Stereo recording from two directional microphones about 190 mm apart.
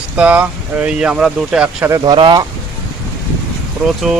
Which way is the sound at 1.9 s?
20° right (ahead or behind).